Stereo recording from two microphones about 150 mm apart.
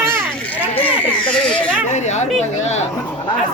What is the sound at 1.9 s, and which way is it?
Speech, 50° left (ahead or behind).